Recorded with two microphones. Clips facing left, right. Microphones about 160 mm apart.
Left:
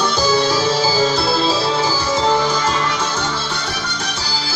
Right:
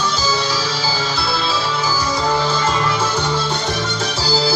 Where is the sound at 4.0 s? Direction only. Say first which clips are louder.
Right 6 dB; 30° right (ahead or behind).